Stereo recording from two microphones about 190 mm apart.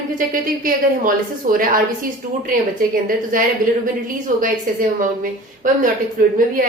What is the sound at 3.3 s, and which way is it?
A woman's voice, 45° right (ahead or behind).